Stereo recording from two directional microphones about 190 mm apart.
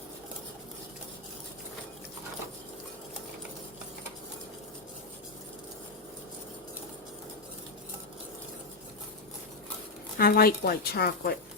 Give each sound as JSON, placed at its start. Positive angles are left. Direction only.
{"t": 10.2, "sound": "a woman's voice", "side_deg": 50}